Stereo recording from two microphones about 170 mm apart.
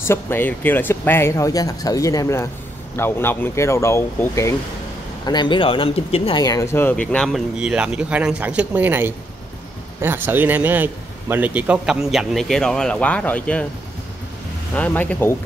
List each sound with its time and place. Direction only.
0.0 s speech: 15° left (ahead or behind); by 6.4 s 35° left (ahead or behind)
6.4 s speech: 20° left (ahead or behind)
14.7 s speech: 10° left (ahead or behind)